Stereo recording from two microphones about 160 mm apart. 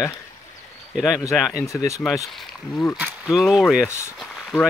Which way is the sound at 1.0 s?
Centre (ahead or behind).